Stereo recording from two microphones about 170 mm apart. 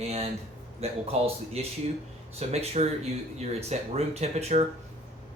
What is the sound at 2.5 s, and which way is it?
Speech, 40° right (ahead or behind).